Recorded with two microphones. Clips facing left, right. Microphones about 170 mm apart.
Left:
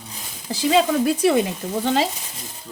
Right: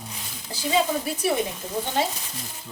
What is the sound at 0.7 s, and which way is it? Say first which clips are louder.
Speech: left 6 dB; 90° left.